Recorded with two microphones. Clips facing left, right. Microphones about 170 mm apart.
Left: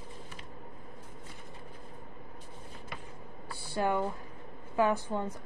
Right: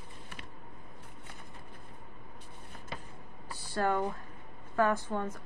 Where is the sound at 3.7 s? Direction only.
15° left (ahead or behind).